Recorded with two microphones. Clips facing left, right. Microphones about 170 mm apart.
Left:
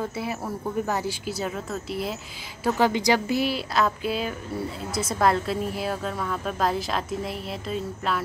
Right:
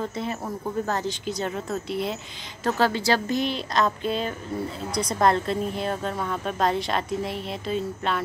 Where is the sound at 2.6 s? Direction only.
15° left (ahead or behind).